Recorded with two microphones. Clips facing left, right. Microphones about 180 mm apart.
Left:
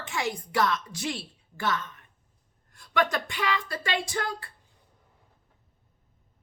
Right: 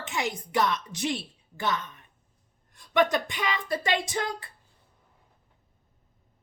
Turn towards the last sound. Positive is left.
turn(degrees=-20)  # may be behind; listen again after turning